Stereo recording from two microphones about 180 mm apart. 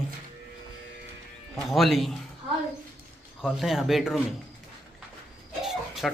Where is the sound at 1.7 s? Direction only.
Centre (ahead or behind).